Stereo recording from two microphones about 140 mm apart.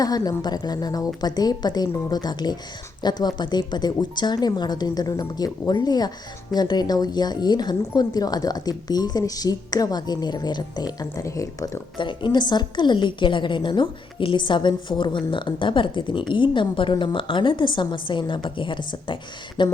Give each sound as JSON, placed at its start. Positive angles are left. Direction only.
{"t": 0.0, "sound": "a woman's voice", "side_deg": 25}
{"t": 11.9, "sound": "a woman's voice", "side_deg": 35}